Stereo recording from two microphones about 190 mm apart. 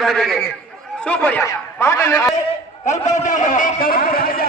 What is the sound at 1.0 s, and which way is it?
A man's voice, 5° left (ahead or behind).